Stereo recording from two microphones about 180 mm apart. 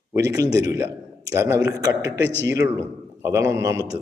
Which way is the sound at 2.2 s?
80° right.